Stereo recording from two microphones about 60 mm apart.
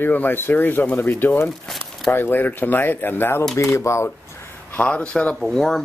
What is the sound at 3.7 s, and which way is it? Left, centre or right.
Speech, left.